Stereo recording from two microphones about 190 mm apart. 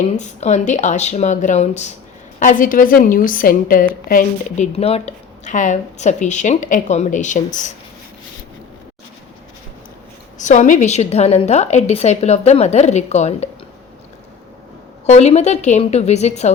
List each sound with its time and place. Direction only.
0.2 s a woman's voice: 35° left (ahead or behind)
10.3 s speech: 40° left (ahead or behind)
15.0 s speech: 35° left (ahead or behind)